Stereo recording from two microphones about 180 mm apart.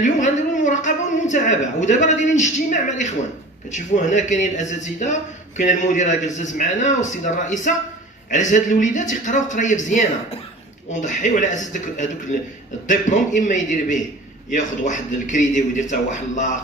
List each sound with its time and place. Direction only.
0.0 s a man's voice: 45° left (ahead or behind)